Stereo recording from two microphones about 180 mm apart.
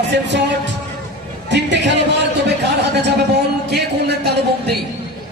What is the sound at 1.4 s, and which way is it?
Speech, 75° right (ahead or behind).